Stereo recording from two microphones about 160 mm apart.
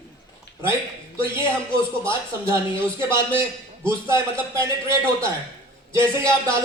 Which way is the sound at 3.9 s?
15° right (ahead or behind).